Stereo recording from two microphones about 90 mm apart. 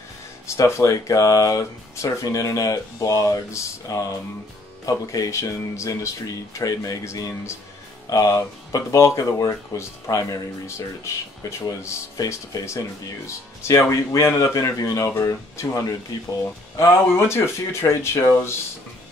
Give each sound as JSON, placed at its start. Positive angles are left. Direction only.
{"t": 0.5, "sound": "speech", "side_deg": 30}
{"t": 11.6, "sound": "speech", "side_deg": 40}